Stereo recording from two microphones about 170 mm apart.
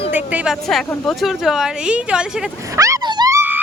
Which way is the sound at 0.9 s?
Centre (ahead or behind).